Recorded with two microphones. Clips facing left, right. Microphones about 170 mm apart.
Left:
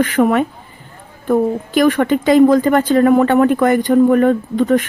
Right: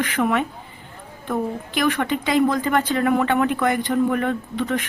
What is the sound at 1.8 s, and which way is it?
Speech, 45° left (ahead or behind).